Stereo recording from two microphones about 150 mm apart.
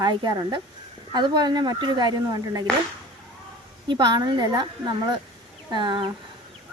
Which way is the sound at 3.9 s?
30° right (ahead or behind).